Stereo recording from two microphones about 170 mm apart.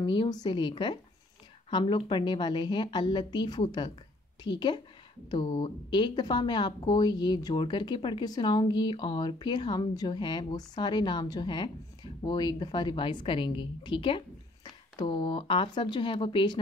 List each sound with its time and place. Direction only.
0.0 s speech: 25° left (ahead or behind)